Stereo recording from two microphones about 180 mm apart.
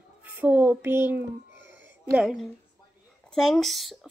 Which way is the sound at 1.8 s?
5° right (ahead or behind).